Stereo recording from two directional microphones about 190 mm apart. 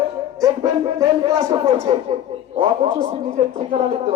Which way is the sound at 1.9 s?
30° right (ahead or behind).